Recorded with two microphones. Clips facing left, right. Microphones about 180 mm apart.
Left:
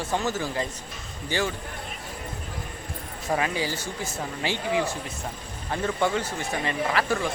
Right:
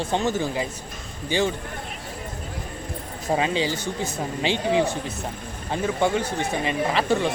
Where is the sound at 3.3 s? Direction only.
25° right (ahead or behind).